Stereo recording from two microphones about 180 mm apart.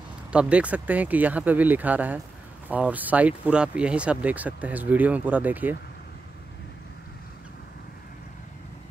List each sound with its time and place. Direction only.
0.3 s speech: 5° right (ahead or behind)